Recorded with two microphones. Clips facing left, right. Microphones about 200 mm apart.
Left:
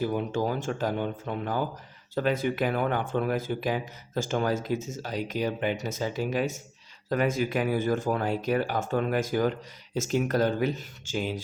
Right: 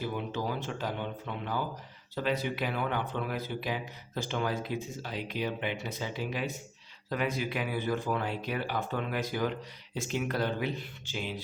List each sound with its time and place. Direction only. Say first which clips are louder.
0.0 s speech: left 6 dB; 45° left (ahead or behind)